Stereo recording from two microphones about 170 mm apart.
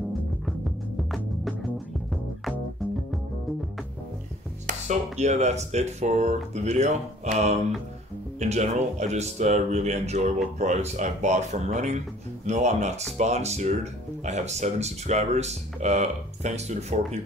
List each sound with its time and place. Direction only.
4.6 s speech: 45° right (ahead or behind)